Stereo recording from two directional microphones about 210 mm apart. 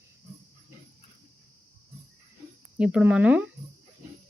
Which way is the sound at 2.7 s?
5° right (ahead or behind).